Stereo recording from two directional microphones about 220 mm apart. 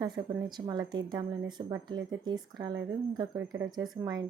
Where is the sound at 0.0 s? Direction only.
20° right (ahead or behind).